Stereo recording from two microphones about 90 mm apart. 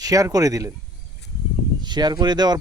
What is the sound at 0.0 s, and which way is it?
Speech, 40° right (ahead or behind).